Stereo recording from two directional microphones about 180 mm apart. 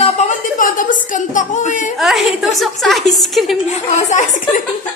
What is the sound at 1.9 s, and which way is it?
A woman's voice, centre (ahead or behind).